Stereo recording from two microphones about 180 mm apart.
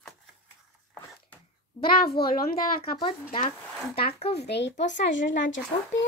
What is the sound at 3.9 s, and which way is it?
Speech, 35° left (ahead or behind).